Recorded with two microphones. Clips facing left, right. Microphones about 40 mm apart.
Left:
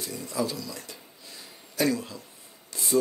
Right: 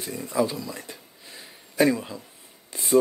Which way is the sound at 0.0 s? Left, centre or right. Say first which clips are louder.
Right 5 dB; right.